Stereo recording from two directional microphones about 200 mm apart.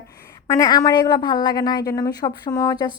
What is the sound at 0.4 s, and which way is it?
A woman's voice, 15° left (ahead or behind).